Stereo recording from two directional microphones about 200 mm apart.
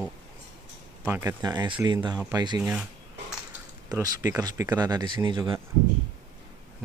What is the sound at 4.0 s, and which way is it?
Speech, 15° right (ahead or behind).